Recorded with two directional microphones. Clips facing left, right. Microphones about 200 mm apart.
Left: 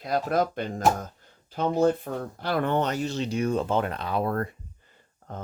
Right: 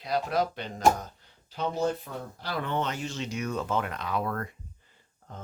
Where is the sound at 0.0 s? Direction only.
50° left (ahead or behind); by 4.4 s 35° left (ahead or behind).